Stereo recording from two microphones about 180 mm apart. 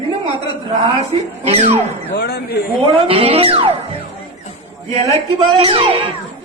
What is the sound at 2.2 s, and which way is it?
Speech, 60° left (ahead or behind).